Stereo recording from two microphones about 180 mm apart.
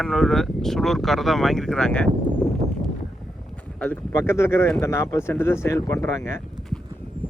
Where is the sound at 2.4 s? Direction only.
Centre (ahead or behind).